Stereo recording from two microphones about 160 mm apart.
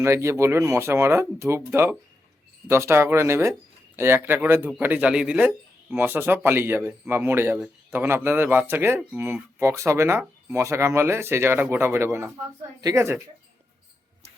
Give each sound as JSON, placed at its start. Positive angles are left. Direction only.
{"t": 0.0, "sound": "speech", "side_deg": -15}